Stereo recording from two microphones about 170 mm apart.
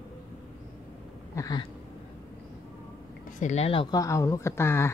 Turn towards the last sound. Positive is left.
turn(degrees=15)  # may be behind; listen again after turning